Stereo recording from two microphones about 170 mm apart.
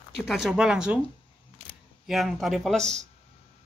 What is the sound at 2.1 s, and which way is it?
Speech, centre (ahead or behind).